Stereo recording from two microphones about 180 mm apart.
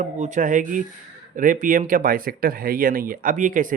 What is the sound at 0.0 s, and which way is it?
Speech, 45° right (ahead or behind).